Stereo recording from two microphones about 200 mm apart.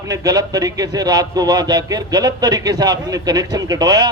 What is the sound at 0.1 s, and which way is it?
A man's voice, 20° right (ahead or behind).